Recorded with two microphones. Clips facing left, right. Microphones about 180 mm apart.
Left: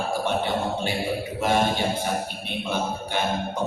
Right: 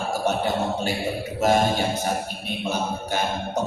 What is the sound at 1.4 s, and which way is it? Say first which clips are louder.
Music: right 3 dB; 45° right (ahead or behind).